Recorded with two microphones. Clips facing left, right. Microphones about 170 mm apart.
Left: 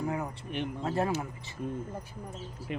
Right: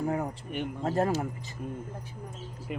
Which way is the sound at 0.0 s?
45° right (ahead or behind).